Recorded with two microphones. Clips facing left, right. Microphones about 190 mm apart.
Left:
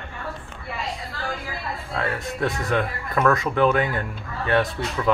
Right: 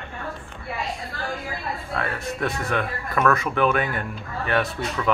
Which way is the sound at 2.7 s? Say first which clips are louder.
Left 2 dB; 20° left (ahead or behind).